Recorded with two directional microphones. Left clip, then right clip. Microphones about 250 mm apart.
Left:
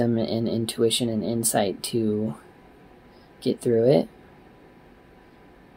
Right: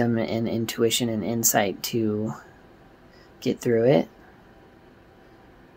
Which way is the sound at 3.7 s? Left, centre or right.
Centre.